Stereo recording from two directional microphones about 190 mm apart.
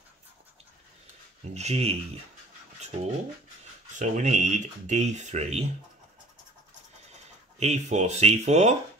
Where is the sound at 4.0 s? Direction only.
40° right (ahead or behind).